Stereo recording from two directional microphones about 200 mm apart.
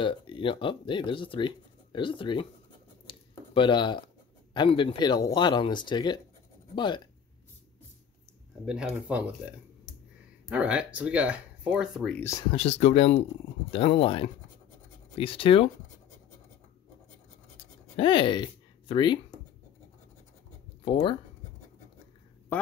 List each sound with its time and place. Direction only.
0.0 s speech: 25° left (ahead or behind)
3.1 s a sound: 25° left (ahead or behind)
4.6 s speech: 25° left (ahead or behind)
8.6 s speech: 5° right (ahead or behind)
10.5 s speech: 5° right (ahead or behind)
12.5 s speech: 30° left (ahead or behind)
17.9 s speech: 25° left (ahead or behind)
20.8 s speech: 25° left (ahead or behind)
22.5 s speech: 10° left (ahead or behind)